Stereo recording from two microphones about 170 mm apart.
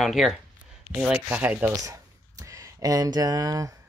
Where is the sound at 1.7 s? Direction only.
20° right (ahead or behind).